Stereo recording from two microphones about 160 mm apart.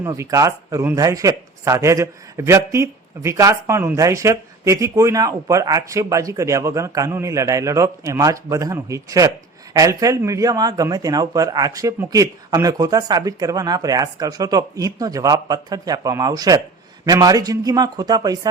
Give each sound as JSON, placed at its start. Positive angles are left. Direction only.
{"t": 0.0, "sound": "speech", "side_deg": -20}